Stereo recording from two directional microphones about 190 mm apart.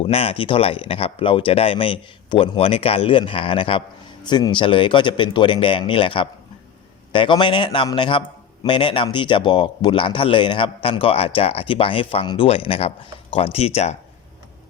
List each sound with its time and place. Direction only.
0.0 s speech: 30° left (ahead or behind)